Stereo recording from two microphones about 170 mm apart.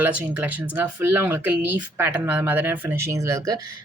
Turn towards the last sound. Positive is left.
turn(degrees=-20)  # may be behind; listen again after turning